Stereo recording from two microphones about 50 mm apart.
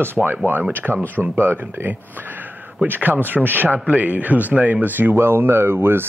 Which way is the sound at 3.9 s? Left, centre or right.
Right.